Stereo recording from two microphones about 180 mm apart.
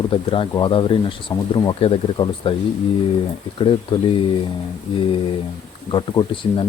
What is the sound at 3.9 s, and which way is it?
Speech, 25° left (ahead or behind).